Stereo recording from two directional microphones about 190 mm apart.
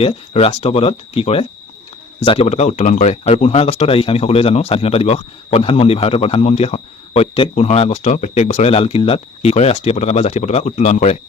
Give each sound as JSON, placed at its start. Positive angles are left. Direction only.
{"t": 0.0, "sound": "speech", "side_deg": 30}